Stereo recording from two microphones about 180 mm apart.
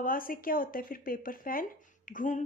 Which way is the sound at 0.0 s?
50° left (ahead or behind).